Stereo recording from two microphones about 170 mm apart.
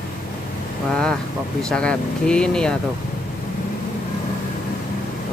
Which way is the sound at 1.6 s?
5° left (ahead or behind).